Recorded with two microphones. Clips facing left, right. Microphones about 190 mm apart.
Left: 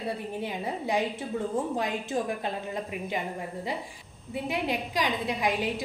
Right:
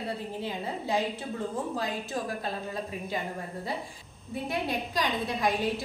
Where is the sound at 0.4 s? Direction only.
20° left (ahead or behind).